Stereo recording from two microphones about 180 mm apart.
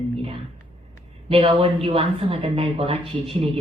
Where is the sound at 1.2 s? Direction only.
30° right (ahead or behind).